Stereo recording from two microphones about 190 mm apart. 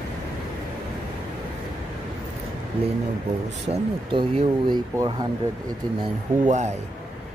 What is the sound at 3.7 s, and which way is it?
Speech, 40° right (ahead or behind).